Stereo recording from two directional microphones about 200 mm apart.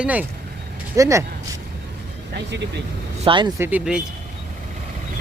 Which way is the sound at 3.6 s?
10° right (ahead or behind).